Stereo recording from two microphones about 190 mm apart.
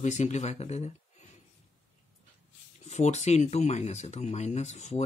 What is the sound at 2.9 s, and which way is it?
Speech, 35° left (ahead or behind).